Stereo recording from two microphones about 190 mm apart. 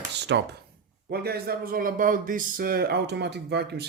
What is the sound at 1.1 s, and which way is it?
Speech, 55° right (ahead or behind).